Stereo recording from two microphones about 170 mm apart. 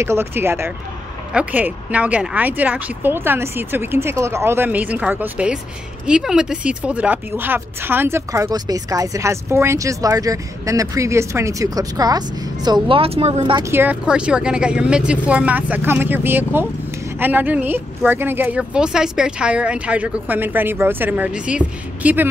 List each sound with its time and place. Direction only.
0.0 s speech: 15° right (ahead or behind)
13.7 s speech: 10° right (ahead or behind)